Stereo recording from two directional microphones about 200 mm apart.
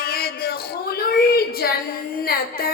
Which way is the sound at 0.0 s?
50° left (ahead or behind).